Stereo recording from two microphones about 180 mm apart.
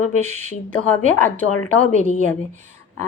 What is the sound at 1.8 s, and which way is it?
Speech, 45° right (ahead or behind).